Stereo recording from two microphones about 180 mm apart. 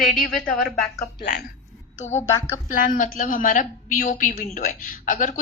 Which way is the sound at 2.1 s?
15° left (ahead or behind).